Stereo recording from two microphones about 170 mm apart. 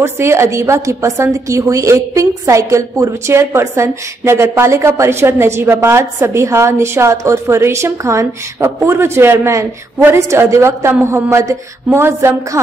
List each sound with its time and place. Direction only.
0.0 s a woman's voice: 15° right (ahead or behind)